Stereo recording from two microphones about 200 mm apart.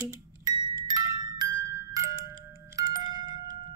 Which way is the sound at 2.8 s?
20° right (ahead or behind).